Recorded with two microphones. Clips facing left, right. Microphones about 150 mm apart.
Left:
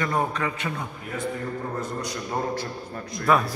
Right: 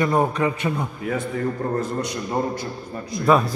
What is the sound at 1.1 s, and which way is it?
Speech, 90° right.